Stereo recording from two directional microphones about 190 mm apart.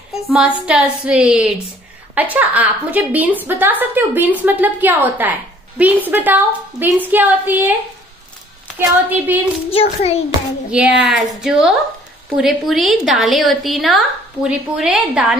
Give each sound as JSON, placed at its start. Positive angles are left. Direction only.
{"t": 0.7, "sound": "a woman's voice", "side_deg": -5}
{"t": 8.7, "sound": "a woman's voice", "side_deg": -10}
{"t": 9.7, "sound": "a child's voice", "side_deg": 30}
{"t": 10.7, "sound": "a woman's voice", "side_deg": -5}